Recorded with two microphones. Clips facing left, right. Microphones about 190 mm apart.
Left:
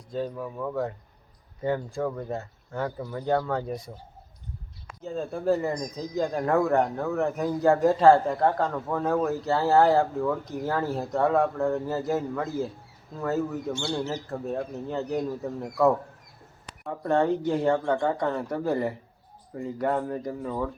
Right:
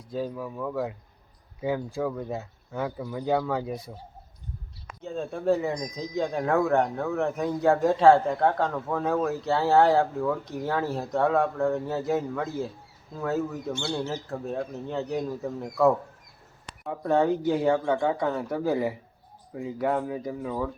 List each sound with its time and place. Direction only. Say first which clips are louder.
0.1 s speech: even; 5° right (ahead or behind)
5.0 s speech: even; centre (ahead or behind)